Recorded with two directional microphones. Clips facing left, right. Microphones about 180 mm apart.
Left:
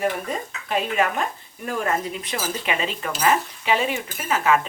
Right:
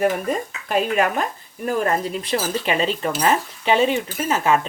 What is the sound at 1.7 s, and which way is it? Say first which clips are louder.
Cutlery: right 4 dB; 35° right (ahead or behind).